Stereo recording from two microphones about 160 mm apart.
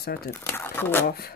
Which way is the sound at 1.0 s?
75° left (ahead or behind).